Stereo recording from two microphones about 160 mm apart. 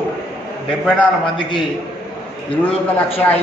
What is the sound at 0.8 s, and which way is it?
Speech, 5° left (ahead or behind).